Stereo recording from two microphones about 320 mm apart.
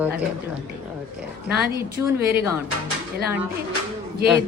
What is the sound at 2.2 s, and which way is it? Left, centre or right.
Speech, right.